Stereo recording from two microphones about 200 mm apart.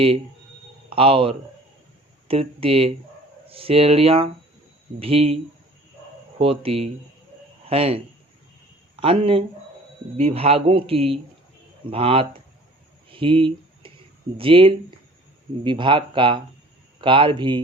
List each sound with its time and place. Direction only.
0.9 s speech: 25° right (ahead or behind)
6.4 s speech: 30° right (ahead or behind)
13.1 s a sound: 25° right (ahead or behind)
14.3 s speech: 25° right (ahead or behind)